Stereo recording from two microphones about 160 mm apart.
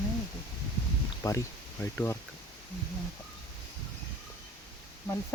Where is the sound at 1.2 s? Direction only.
20° left (ahead or behind).